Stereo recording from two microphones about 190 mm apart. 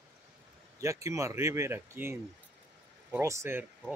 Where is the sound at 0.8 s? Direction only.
15° right (ahead or behind).